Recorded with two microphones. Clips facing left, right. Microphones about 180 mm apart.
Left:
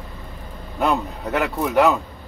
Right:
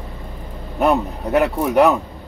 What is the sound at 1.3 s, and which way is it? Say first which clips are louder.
Speech: right 4 dB; 15° right (ahead or behind).